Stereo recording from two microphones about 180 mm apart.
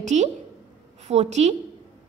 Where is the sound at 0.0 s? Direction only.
40° right (ahead or behind).